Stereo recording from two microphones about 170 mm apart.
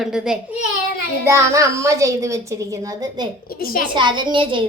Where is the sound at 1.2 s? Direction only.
15° right (ahead or behind).